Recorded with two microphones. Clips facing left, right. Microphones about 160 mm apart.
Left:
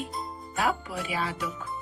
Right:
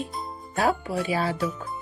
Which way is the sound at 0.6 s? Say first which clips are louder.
Right 5 dB; 35° right (ahead or behind).